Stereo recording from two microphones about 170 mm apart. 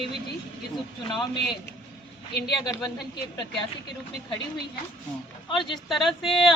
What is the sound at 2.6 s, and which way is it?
Speech, 20° left (ahead or behind).